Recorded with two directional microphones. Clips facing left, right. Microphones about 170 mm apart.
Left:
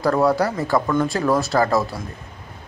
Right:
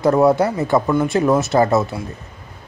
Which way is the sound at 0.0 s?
20° right (ahead or behind).